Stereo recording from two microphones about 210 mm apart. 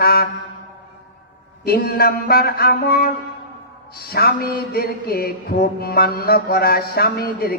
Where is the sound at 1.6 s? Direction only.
45° left (ahead or behind).